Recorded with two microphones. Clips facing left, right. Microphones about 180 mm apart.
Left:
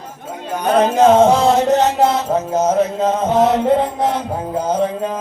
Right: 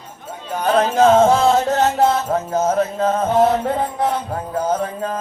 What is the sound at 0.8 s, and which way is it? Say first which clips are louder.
Music: left 2 dB; 20° left (ahead or behind).